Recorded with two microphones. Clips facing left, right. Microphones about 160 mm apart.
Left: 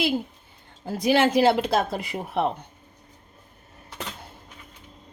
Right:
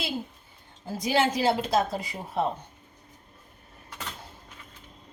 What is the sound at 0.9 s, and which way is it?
Speech, 60° left (ahead or behind).